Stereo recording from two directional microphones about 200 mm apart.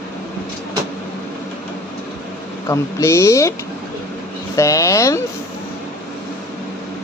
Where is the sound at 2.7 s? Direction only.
15° left (ahead or behind).